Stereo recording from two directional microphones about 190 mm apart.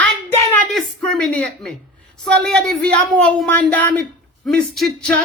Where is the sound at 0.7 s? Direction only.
5° left (ahead or behind).